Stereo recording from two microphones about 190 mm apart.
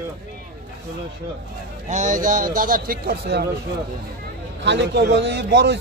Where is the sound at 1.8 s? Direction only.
40° right (ahead or behind).